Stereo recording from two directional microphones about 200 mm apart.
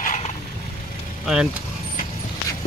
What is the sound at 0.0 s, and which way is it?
Vehicle, 40° left (ahead or behind).